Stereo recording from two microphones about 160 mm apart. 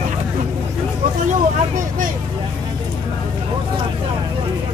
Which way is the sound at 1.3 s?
55° right (ahead or behind).